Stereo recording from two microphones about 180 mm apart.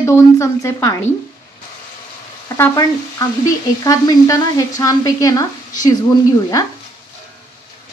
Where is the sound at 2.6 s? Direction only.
20° left (ahead or behind).